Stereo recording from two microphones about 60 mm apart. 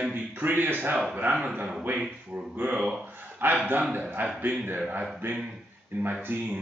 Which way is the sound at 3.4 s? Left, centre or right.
Right.